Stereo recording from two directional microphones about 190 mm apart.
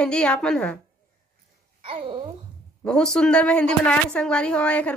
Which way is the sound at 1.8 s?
30° right (ahead or behind).